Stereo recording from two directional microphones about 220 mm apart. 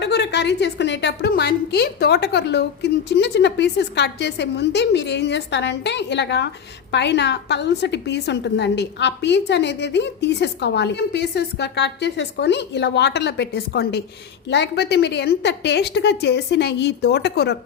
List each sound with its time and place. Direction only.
0.0 s a woman's voice: 50° left (ahead or behind)